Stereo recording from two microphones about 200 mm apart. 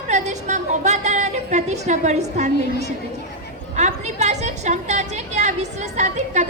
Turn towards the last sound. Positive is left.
turn(degrees=-35)  # may be behind; listen again after turning